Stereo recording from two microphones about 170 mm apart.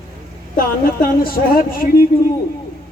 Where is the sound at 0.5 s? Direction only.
60° left (ahead or behind).